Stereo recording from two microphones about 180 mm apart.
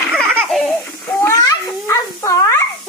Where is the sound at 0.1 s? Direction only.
5° left (ahead or behind).